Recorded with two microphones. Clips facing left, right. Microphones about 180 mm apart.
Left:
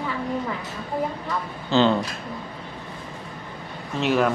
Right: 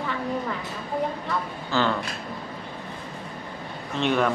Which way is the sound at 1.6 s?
20° left (ahead or behind).